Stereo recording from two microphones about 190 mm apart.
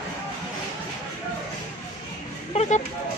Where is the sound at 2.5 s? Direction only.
40° left (ahead or behind).